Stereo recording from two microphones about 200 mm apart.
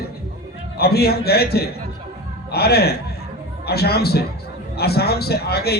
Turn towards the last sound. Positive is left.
turn(degrees=50)  # may be behind; listen again after turning